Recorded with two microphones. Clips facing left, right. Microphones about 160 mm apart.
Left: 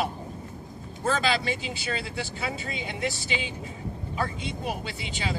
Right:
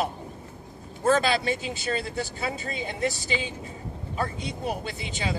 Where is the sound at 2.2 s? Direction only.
40° right (ahead or behind).